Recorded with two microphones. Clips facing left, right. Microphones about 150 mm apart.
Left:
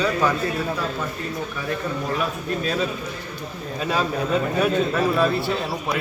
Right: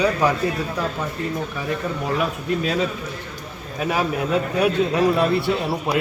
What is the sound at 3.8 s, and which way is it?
A man's voice, 15° right (ahead or behind).